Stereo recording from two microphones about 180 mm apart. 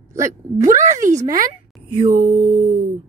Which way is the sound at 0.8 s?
45° right (ahead or behind).